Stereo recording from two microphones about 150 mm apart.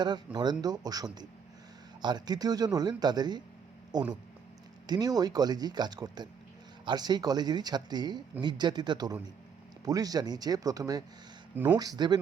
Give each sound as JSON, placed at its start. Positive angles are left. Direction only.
{"t": 0.3, "sound": "speech", "side_deg": -25}
{"t": 4.9, "sound": "speech", "side_deg": -25}
{"t": 11.5, "sound": "speech", "side_deg": -10}
{"t": 11.8, "sound": "speech", "side_deg": -25}